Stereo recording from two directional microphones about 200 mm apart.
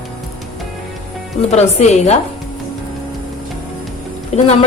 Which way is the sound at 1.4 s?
35° left (ahead or behind).